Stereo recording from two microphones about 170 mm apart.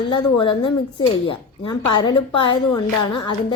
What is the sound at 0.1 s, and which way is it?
Speech, 25° left (ahead or behind).